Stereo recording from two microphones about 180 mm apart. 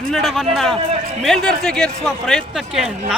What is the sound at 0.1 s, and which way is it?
A man's voice, centre (ahead or behind).